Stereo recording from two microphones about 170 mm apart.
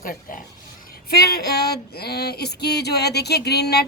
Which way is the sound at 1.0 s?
65° left (ahead or behind).